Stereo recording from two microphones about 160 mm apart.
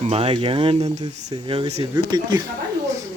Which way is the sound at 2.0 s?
25° right (ahead or behind).